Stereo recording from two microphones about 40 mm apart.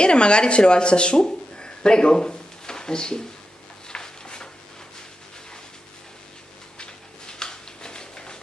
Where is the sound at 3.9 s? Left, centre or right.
Centre.